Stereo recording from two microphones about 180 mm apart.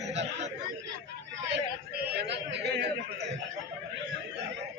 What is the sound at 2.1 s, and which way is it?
Chatter, 70° right (ahead or behind).